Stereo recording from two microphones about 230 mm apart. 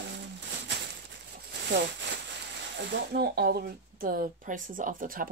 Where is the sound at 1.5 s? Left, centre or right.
Right.